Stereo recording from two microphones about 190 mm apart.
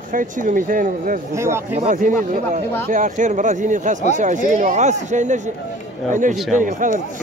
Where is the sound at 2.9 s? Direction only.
45° right (ahead or behind).